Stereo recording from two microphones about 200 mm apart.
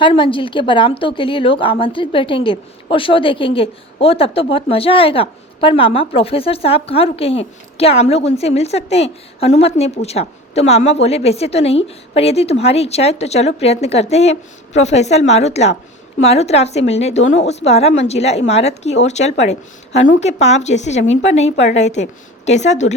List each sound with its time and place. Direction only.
0.0 s a woman's voice: 25° left (ahead or behind)